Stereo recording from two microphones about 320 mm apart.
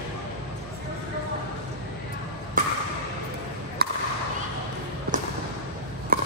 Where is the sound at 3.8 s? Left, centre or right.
Right.